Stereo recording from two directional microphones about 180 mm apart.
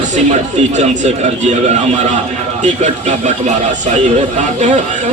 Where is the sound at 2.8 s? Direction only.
45° right (ahead or behind).